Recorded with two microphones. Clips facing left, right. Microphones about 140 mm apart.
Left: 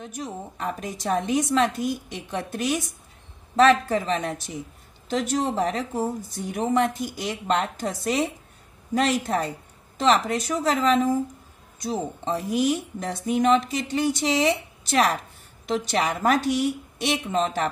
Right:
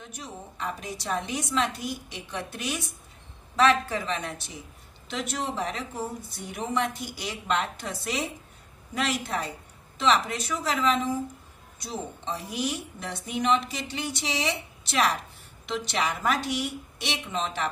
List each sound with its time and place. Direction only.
0.1 s speech: 45° left (ahead or behind)